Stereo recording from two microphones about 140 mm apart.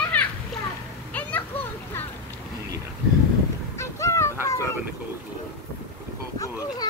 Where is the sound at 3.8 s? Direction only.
20° left (ahead or behind).